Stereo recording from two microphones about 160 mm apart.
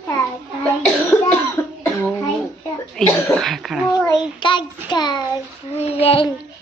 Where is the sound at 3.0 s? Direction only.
5° left (ahead or behind).